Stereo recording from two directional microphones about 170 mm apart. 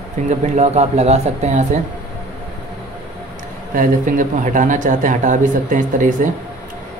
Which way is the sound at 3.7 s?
50° right (ahead or behind).